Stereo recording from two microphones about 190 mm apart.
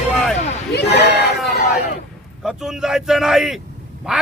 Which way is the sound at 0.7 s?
60° left (ahead or behind).